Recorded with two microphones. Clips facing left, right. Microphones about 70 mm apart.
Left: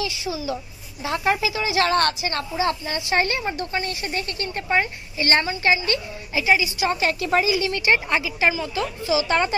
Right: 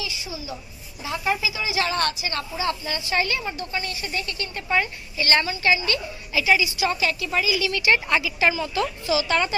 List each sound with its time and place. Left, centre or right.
0.2 s a child's voice: left
1.0 s speech: left
3.0 s a woman's voice: left
7.0 s speech: left
7.5 s a woman's voice: left
8.1 s a woman's voice: centre